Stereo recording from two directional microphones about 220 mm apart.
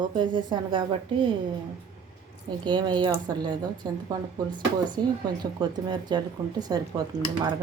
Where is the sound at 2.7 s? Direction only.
20° right (ahead or behind).